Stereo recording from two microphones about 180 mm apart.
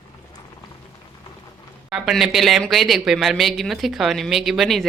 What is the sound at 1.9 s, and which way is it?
Speech, centre (ahead or behind).